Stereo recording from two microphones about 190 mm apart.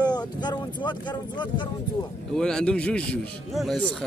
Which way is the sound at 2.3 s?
5° left (ahead or behind).